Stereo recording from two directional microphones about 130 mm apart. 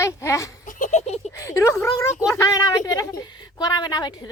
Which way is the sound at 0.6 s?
85° left.